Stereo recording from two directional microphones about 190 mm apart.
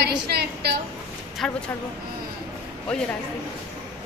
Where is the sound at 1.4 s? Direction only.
5° left (ahead or behind).